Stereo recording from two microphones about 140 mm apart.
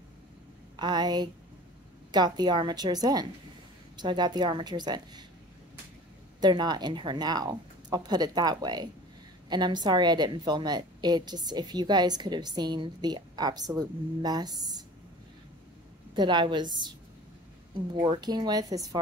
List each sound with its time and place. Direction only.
0.7 s a woman's voice: 30° right (ahead or behind)
6.4 s a woman's voice: 30° right (ahead or behind)
16.2 s a woman's voice: 35° right (ahead or behind)